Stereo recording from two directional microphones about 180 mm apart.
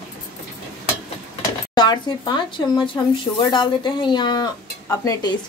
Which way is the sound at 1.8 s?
25° left (ahead or behind).